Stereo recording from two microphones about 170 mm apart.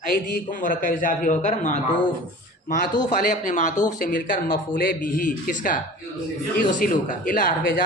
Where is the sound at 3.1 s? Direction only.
50° left (ahead or behind).